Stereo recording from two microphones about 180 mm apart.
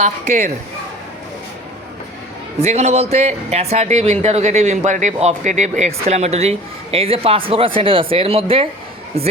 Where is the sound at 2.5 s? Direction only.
35° right (ahead or behind).